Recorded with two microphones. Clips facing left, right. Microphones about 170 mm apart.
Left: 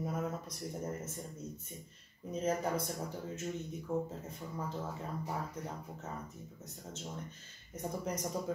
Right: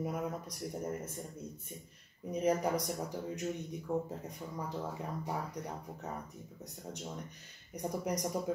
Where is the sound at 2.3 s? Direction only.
15° right (ahead or behind).